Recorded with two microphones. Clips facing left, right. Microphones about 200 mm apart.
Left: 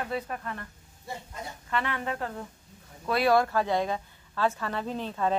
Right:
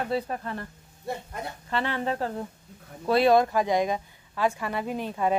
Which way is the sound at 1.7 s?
30° right (ahead or behind).